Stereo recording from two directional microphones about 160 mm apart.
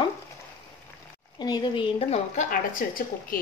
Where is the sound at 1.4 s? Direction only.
25° left (ahead or behind).